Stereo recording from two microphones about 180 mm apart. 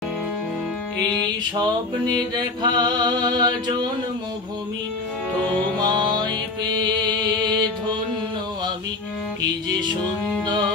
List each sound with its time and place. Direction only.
2.1 s music: 25° right (ahead or behind)
5.8 s music: 25° right (ahead or behind)